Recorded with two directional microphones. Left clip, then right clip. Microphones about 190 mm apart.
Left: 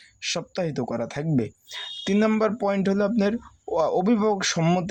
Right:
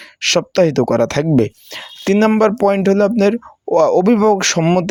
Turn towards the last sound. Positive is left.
turn(degrees=-35)  # may be behind; listen again after turning